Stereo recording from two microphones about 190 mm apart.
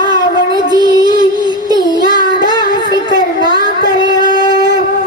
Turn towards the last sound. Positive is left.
turn(degrees=-20)  # may be behind; listen again after turning